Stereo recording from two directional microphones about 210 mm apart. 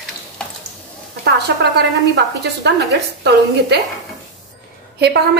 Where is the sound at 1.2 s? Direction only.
55° right (ahead or behind).